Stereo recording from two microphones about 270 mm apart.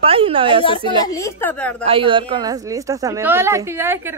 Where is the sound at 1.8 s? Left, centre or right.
Centre.